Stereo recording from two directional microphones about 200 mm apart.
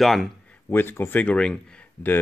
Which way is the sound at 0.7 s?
10° left (ahead or behind).